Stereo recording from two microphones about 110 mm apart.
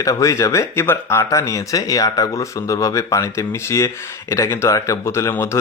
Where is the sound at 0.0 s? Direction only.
30° left (ahead or behind).